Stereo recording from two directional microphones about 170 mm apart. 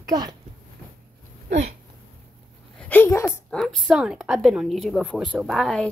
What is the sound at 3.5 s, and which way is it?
A woman's voice, 5° left (ahead or behind).